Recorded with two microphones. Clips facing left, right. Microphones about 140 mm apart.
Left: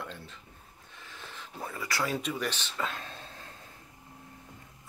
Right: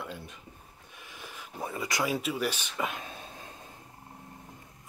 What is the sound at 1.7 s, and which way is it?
Speech, 20° right (ahead or behind).